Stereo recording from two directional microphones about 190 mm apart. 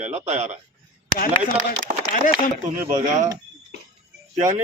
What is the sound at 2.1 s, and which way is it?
Speech, 45° left (ahead or behind).